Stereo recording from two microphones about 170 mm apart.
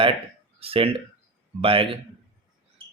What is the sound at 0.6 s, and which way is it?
Speech, 35° right (ahead or behind).